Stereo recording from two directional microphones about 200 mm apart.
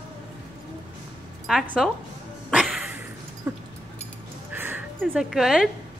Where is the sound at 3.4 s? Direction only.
10° right (ahead or behind).